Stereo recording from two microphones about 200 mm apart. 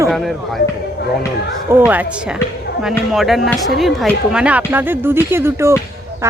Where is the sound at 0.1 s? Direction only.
Centre (ahead or behind).